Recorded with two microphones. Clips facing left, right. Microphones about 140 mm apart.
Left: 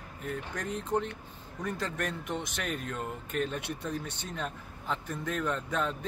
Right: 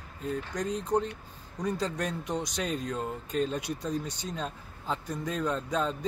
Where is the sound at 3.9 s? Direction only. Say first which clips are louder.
Right 4 dB; 65° left (ahead or behind).